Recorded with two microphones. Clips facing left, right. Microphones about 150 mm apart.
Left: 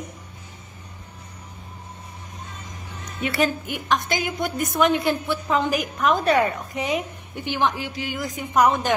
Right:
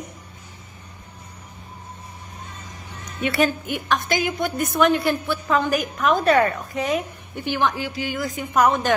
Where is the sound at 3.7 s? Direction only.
15° left (ahead or behind).